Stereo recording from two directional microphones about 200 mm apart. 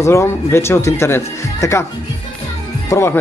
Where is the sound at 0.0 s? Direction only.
15° left (ahead or behind).